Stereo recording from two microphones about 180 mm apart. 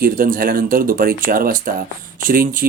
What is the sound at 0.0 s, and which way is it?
Speech, 50° right (ahead or behind).